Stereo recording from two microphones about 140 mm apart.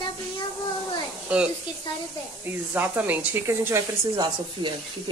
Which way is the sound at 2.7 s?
10° right (ahead or behind).